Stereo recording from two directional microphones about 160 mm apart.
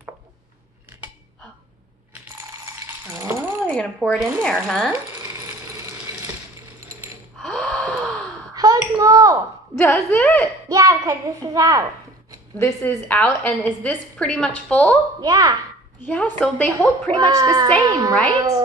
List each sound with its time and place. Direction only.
2.9 s a sound: 15° right (ahead or behind)
3.6 s speech: 5° left (ahead or behind)
7.3 s gasp: 5° left (ahead or behind)
8.5 s a sound: 20° right (ahead or behind)
9.8 s a woman's voice: 15° left (ahead or behind)
10.7 s a child's voice: 20° right (ahead or behind)
12.5 s a woman's voice: 15° left (ahead or behind)
15.2 s a child's voice: 25° right (ahead or behind)
16.1 s a woman's voice: 10° left (ahead or behind)
17.1 s a child's voice: 25° right (ahead or behind)